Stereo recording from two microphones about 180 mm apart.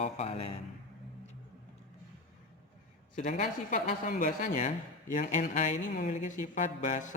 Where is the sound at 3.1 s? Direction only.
45° left (ahead or behind).